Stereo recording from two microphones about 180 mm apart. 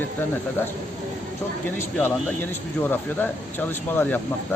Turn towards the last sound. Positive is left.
turn(degrees=10)  # may be behind; listen again after turning